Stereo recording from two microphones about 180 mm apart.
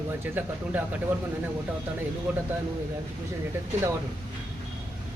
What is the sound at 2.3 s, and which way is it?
Speech, 10° right (ahead or behind).